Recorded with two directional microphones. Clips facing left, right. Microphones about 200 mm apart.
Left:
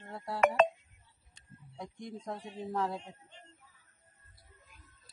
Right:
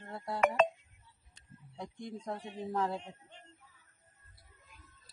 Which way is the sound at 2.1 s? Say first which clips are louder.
Right 1 dB; 10° left (ahead or behind).